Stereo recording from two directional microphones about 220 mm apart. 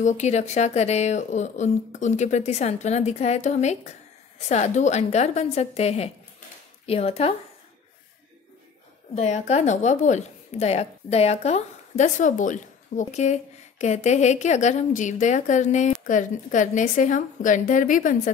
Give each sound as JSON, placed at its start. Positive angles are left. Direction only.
{"t": 0.0, "sound": "a woman's voice", "side_deg": 30}
{"t": 9.1, "sound": "a woman's voice", "side_deg": 30}